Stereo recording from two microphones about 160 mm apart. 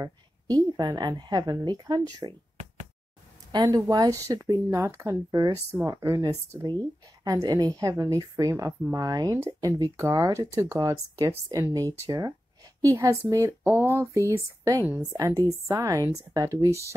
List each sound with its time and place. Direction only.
0.0 s speech: 20° right (ahead or behind)
3.5 s a woman's voice: 25° right (ahead or behind)